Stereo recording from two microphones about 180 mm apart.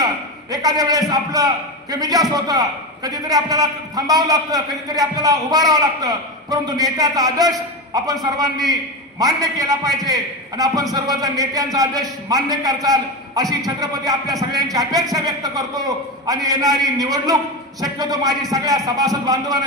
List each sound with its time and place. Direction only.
0.0 s a man's voice: 20° right (ahead or behind)